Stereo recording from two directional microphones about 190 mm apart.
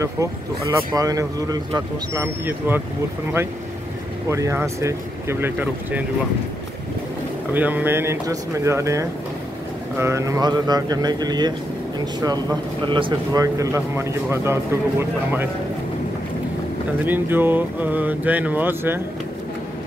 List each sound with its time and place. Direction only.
0.0 s speech: 15° right (ahead or behind)
4.3 s speech: 15° right (ahead or behind)
7.5 s speech: 10° right (ahead or behind)
17.0 s speech: 10° right (ahead or behind)